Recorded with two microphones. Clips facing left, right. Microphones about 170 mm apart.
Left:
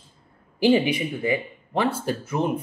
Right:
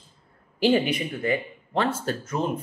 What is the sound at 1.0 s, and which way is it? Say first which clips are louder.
Speech: left 1 dB; 10° left (ahead or behind).